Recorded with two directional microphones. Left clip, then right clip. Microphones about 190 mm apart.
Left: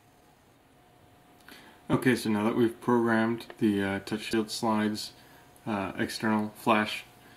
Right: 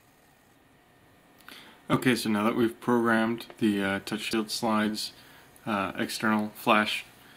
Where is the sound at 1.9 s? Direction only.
5° right (ahead or behind).